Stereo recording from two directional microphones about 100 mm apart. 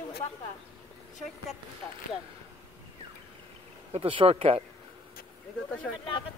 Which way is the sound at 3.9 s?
75° right (ahead or behind).